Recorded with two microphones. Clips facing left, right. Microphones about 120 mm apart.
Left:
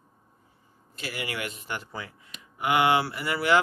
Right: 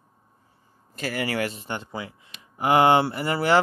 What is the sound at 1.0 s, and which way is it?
Speech, 45° right (ahead or behind).